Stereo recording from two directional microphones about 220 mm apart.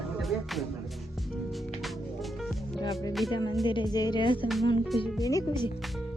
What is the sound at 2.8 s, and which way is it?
Music, 15° left (ahead or behind).